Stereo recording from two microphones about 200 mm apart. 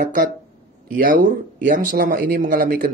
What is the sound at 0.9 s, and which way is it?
Speech, 45° right (ahead or behind).